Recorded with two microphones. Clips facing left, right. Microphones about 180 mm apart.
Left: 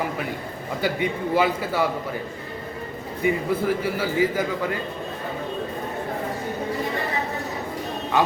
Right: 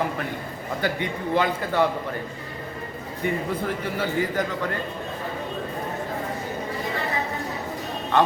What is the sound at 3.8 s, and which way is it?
Speech, 5° left (ahead or behind).